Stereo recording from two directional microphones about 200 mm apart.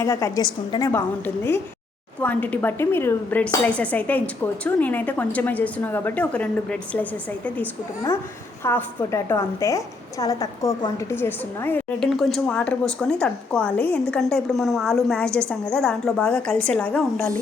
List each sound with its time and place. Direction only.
0.0 s a woman's voice: 15° left (ahead or behind)